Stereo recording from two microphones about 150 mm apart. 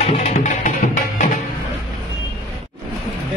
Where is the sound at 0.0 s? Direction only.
45° left (ahead or behind).